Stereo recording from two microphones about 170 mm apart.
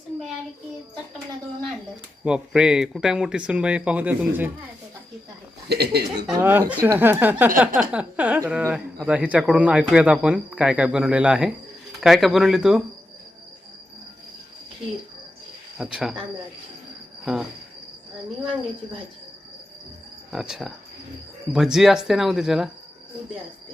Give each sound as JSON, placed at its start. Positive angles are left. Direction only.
{"t": 2.2, "sound": "speech", "side_deg": -5}
{"t": 5.6, "sound": "speech", "side_deg": -70}
{"t": 6.2, "sound": "speech", "side_deg": -10}
{"t": 15.8, "sound": "speech", "side_deg": -5}
{"t": 20.3, "sound": "speech", "side_deg": -5}